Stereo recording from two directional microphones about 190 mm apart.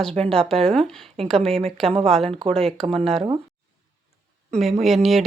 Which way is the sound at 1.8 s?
30° right (ahead or behind).